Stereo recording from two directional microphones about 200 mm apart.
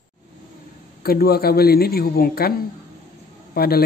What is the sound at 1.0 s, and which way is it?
Speech, 50° left (ahead or behind).